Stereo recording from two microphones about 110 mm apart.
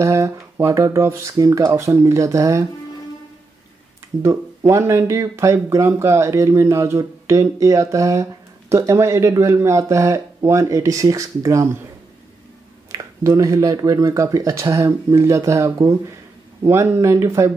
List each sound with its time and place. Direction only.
0.0 s speech: 25° right (ahead or behind)
4.2 s speech: 30° right (ahead or behind)
12.9 s speech: 30° right (ahead or behind)